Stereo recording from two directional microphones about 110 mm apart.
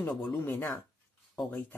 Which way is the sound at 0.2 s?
20° left (ahead or behind).